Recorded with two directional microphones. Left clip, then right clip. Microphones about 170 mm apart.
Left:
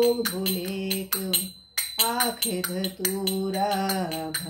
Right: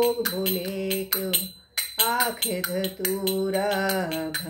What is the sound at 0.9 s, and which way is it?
Music, 5° left (ahead or behind).